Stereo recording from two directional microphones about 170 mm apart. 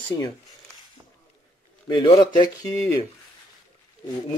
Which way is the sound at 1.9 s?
25° left (ahead or behind).